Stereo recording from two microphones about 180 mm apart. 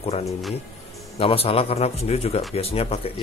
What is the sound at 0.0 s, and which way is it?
Speech, 35° left (ahead or behind).